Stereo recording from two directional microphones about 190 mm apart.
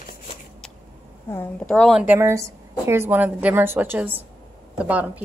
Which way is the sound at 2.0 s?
10° right (ahead or behind).